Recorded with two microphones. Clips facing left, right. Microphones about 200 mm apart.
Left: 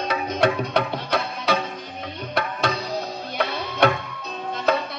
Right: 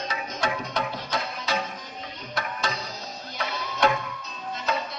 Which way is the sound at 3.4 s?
60° left (ahead or behind).